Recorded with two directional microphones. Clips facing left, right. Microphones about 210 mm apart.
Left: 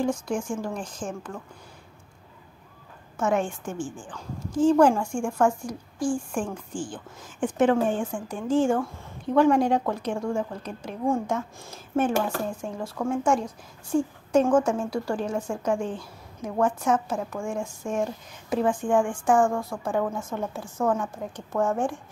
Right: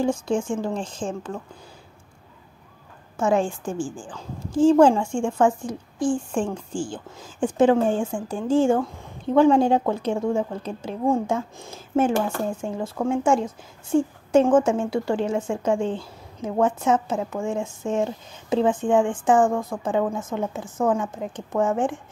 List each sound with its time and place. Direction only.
0.0 s a woman's voice: 25° right (ahead or behind)
3.2 s a woman's voice: 30° right (ahead or behind)